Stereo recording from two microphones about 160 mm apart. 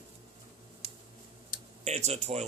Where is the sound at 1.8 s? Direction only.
45° right (ahead or behind).